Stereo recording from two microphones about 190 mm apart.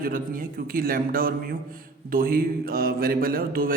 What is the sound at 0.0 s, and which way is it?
Speech, 50° right (ahead or behind).